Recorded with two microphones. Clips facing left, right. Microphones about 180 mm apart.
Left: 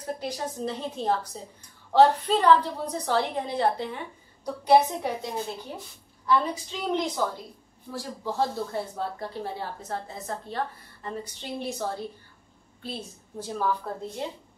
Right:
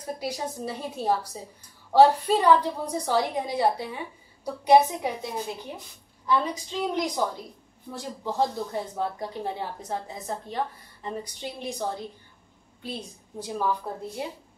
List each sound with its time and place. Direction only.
0.0 s a woman's voice: 10° right (ahead or behind)